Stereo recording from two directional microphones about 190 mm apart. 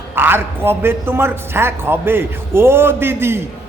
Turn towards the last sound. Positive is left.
turn(degrees=-10)  # may be behind; listen again after turning